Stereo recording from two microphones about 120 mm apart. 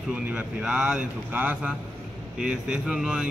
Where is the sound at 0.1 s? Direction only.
10° right (ahead or behind).